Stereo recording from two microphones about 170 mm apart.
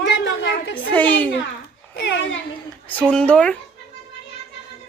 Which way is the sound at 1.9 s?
85° left.